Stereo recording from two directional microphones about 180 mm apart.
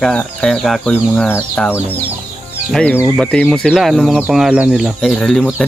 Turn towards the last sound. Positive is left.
turn(degrees=0)  # may be behind; listen again after turning